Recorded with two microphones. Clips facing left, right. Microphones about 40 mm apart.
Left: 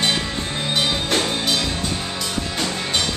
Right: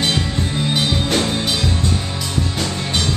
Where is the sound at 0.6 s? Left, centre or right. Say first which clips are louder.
Right 2 dB; centre.